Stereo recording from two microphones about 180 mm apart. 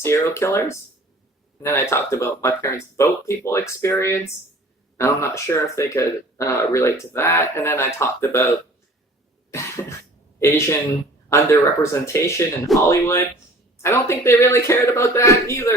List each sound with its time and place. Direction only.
0.0 s speech: 15° left (ahead or behind)
9.5 s cough: 15° left (ahead or behind)
11.3 s speech: 15° left (ahead or behind)